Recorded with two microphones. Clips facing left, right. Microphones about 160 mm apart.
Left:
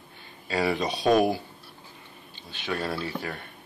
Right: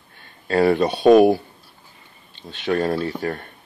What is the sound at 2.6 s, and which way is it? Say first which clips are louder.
Speech: right 9 dB; 45° right (ahead or behind).